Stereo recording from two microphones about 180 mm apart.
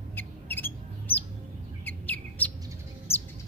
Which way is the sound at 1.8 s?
10° left (ahead or behind).